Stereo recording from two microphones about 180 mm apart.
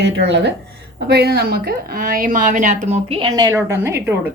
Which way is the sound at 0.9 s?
65° right (ahead or behind).